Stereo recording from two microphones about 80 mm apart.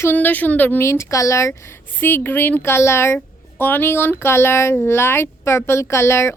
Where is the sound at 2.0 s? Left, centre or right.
Left.